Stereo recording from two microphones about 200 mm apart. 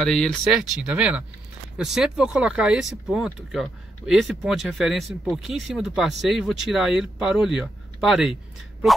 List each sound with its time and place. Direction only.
0.0 s speech: 5° left (ahead or behind)